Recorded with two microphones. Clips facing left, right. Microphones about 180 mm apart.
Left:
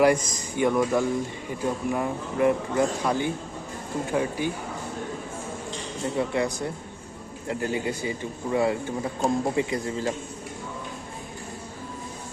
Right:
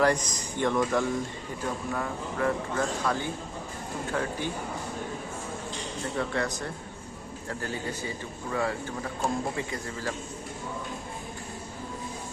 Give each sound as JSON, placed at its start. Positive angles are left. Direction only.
{"t": 0.0, "sound": "speech", "side_deg": 10}
{"t": 6.1, "sound": "speech", "side_deg": 10}